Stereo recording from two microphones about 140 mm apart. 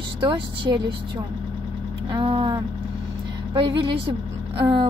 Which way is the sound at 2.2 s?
45° right (ahead or behind).